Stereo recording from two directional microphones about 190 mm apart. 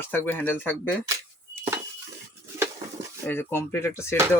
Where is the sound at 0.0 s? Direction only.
10° left (ahead or behind).